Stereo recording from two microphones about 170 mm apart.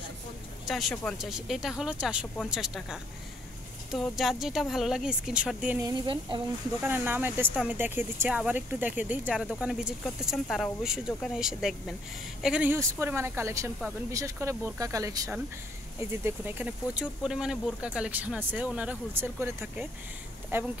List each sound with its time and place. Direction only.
0.7 s a woman's voice: centre (ahead or behind)
5.8 s speech: 25° right (ahead or behind)
6.8 s a woman's voice: 10° right (ahead or behind)
12.7 s speech: 15° right (ahead or behind)